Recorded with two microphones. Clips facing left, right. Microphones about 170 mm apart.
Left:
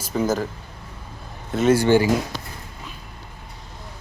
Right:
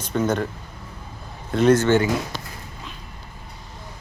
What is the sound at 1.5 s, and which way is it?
Speech, 5° left (ahead or behind).